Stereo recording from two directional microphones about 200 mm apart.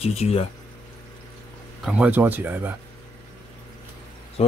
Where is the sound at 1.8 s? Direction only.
5° right (ahead or behind).